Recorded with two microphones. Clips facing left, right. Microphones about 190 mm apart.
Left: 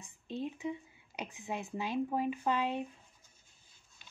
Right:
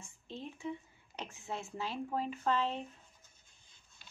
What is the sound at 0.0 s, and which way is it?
Speech, 15° left (ahead or behind).